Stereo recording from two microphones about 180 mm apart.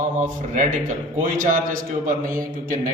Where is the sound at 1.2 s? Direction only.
50° right (ahead or behind).